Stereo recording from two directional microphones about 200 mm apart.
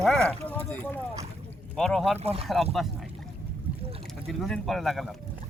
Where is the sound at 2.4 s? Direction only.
Centre (ahead or behind).